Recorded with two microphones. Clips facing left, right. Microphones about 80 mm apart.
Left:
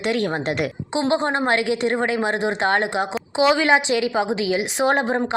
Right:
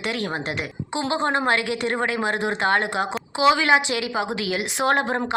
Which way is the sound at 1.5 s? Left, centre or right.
Left.